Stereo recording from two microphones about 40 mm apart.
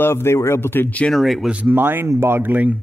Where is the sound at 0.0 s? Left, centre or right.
Left.